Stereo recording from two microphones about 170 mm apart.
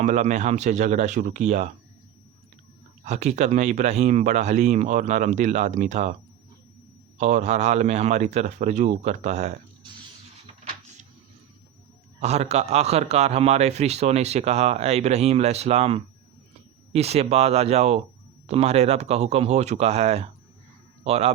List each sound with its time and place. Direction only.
0.0 s speech: 45° right (ahead or behind)
3.0 s speech: 40° right (ahead or behind)
7.2 s speech: 45° right (ahead or behind)
12.2 s a man's voice: 40° right (ahead or behind)